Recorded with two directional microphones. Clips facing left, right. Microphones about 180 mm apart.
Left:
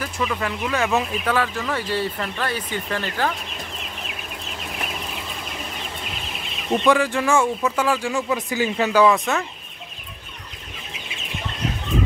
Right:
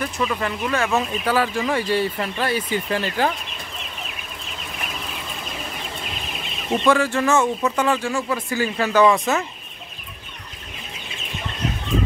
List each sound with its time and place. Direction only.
0.0 s speech: 5° left (ahead or behind)
6.8 s speech: 15° left (ahead or behind)
8.1 s speech: 15° left (ahead or behind)
9.0 s speech: centre (ahead or behind)